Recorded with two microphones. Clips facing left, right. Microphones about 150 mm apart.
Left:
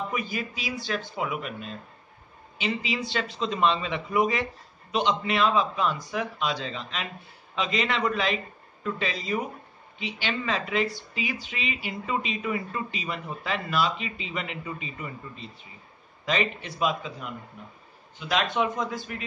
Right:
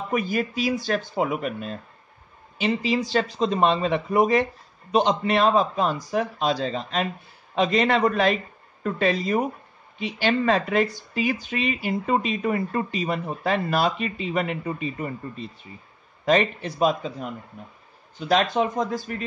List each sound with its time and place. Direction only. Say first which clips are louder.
0.1 s a man's voice: right 7 dB; 50° right (ahead or behind)